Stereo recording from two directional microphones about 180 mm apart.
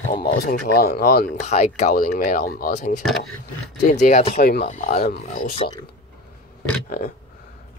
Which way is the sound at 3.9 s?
40° left (ahead or behind).